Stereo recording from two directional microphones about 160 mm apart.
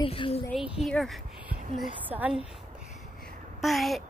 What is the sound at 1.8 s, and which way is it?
Speech, 10° right (ahead or behind).